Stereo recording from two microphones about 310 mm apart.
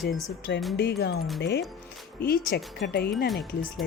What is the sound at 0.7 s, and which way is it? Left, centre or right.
Speech, left.